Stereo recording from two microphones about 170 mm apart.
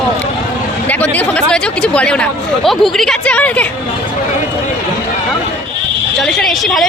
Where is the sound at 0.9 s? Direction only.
10° left (ahead or behind).